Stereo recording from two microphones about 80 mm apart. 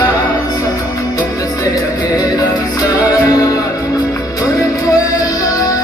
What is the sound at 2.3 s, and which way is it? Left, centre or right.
Music, left.